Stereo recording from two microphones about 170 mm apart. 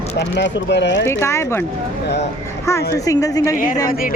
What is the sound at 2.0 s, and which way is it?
Speech, 85° left.